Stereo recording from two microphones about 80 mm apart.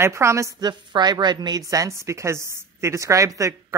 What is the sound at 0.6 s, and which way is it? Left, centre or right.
A woman's voice, right.